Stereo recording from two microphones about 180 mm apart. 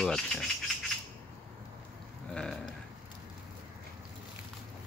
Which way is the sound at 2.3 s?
5° left (ahead or behind).